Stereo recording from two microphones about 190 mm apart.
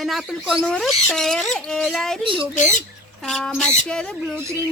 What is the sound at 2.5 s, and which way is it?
Speech, 40° left (ahead or behind).